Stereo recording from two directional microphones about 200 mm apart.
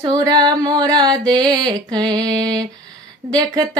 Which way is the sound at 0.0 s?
20° right (ahead or behind).